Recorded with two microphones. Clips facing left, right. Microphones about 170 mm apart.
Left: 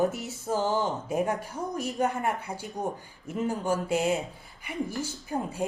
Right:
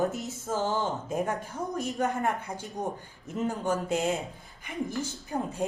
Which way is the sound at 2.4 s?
5° left (ahead or behind).